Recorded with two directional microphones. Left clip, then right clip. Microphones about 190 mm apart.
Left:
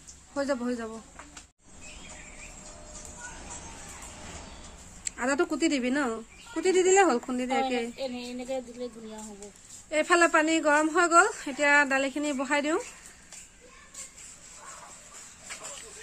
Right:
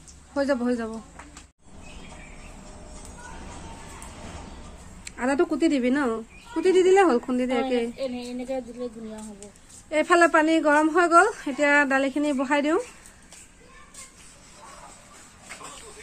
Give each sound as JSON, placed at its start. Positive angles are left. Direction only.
{"t": 0.3, "sound": "speech", "side_deg": -5}
{"t": 5.0, "sound": "a woman's voice", "side_deg": 0}
{"t": 8.3, "sound": "speech", "side_deg": 35}
{"t": 9.8, "sound": "a woman's voice", "side_deg": -5}